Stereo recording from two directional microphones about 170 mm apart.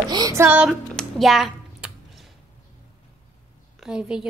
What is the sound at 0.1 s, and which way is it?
Music, 20° right (ahead or behind).